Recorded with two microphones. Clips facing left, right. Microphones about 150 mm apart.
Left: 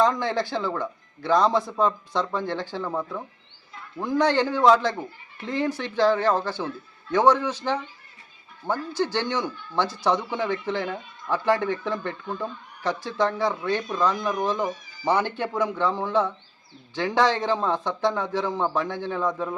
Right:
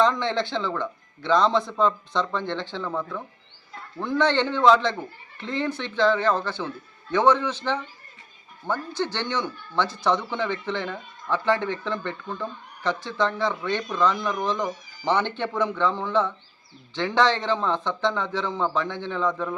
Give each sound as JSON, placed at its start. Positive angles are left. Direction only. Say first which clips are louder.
{"t": 0.1, "sound": "a man's voice", "louder": "even", "side_deg": 10}